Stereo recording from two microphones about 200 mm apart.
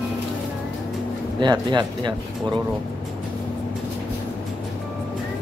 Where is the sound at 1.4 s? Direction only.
20° right (ahead or behind).